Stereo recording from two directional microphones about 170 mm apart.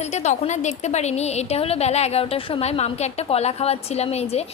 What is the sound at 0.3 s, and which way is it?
A woman's voice, 45° left (ahead or behind).